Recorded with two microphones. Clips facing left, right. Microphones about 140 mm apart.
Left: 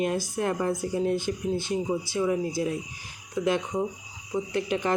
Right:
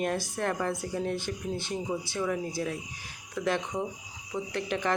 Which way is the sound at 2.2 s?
15° left (ahead or behind).